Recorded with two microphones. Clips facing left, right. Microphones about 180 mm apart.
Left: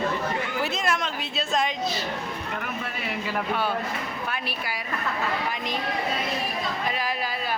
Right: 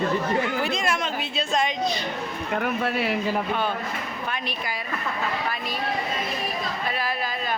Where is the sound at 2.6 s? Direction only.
50° right (ahead or behind).